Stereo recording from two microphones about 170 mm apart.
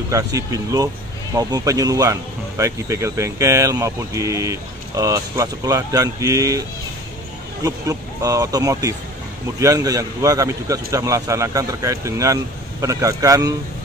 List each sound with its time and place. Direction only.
0.1 s speech: 20° right (ahead or behind)
7.6 s speech: 20° right (ahead or behind)